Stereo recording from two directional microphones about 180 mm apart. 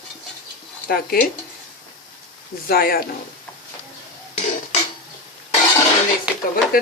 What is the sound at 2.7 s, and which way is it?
Speech, 55° left (ahead or behind).